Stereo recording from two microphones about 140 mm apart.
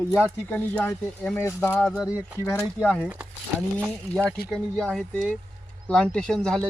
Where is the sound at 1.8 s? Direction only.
5° left (ahead or behind).